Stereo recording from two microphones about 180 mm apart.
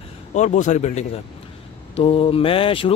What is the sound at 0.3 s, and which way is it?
A man's voice, 40° left (ahead or behind).